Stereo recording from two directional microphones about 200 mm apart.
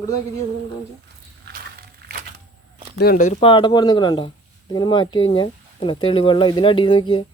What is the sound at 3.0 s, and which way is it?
Speech, 45° left (ahead or behind).